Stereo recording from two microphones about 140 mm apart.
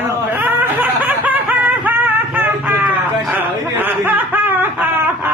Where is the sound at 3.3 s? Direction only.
15° right (ahead or behind).